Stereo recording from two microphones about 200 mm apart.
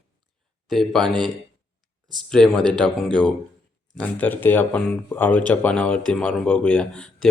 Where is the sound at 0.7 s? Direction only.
Centre (ahead or behind).